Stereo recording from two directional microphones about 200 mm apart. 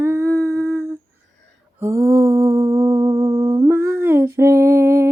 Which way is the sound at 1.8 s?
15° right (ahead or behind).